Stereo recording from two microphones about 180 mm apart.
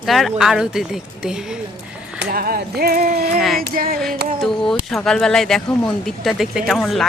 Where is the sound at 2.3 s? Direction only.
55° right (ahead or behind).